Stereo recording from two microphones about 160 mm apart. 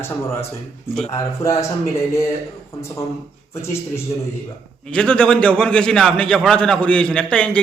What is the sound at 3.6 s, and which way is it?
Speech, 15° left (ahead or behind).